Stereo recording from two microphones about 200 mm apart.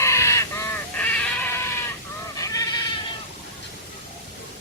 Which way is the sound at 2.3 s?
15° left (ahead or behind).